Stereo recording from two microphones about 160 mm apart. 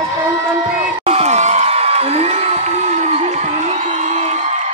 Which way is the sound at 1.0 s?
40° right (ahead or behind).